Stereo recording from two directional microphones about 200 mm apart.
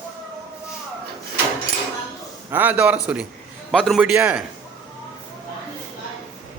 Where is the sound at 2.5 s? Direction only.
10° right (ahead or behind).